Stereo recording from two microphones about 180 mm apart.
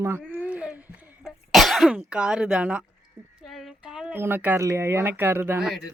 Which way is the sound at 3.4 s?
Centre (ahead or behind).